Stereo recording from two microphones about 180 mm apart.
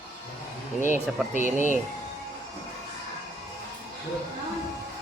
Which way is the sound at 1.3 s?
45° left (ahead or behind).